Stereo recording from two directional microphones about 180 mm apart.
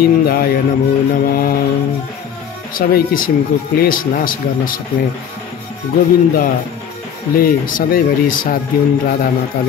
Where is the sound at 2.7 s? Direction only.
50° left (ahead or behind).